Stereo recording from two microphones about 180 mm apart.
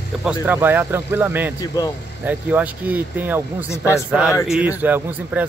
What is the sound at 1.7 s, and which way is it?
Speech, 20° left (ahead or behind).